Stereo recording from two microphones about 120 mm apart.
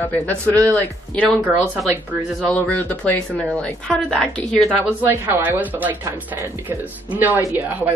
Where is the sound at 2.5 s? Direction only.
10° left (ahead or behind).